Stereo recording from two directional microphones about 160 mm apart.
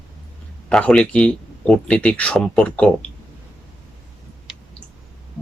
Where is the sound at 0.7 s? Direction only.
5° left (ahead or behind).